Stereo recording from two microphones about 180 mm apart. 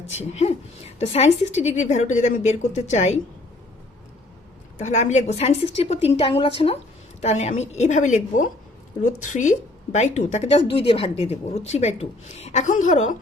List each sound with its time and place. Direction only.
0.1 s a woman's voice: 40° left (ahead or behind)
4.8 s a woman's voice: 40° left (ahead or behind)